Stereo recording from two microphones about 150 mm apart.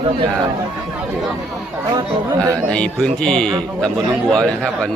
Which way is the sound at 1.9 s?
30° right (ahead or behind).